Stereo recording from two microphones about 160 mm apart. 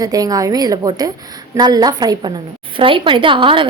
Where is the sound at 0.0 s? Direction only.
25° right (ahead or behind).